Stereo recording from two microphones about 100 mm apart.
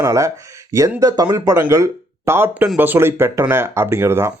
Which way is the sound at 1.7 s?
30° right (ahead or behind).